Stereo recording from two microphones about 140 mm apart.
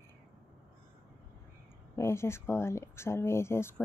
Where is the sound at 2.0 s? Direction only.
20° left (ahead or behind).